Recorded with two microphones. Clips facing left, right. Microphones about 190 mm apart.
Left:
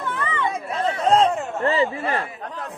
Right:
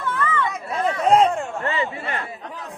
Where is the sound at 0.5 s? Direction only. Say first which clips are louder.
Even; 30° left (ahead or behind).